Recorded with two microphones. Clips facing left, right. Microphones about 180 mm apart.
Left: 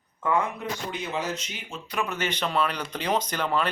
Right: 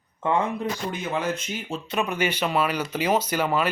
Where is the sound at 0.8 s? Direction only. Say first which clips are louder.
Right 2 dB; 50° right (ahead or behind).